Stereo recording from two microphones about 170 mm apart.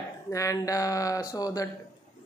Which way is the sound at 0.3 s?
20° left (ahead or behind).